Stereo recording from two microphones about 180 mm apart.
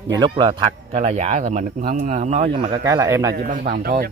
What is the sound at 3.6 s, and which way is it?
Speech, 60° right (ahead or behind).